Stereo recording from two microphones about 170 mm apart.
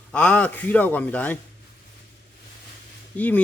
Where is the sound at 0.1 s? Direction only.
5° left (ahead or behind).